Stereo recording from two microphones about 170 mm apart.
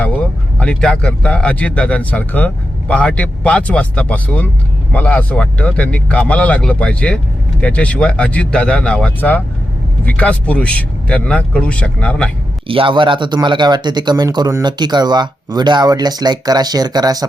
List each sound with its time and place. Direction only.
0.6 s speech: 5° left (ahead or behind)
12.6 s speech: 30° right (ahead or behind)